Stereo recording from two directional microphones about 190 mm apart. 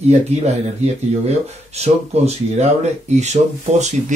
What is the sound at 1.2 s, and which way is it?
Speech, 35° right (ahead or behind).